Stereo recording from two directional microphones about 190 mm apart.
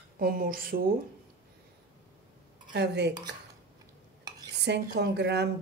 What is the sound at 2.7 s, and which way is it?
Speech, 65° right (ahead or behind).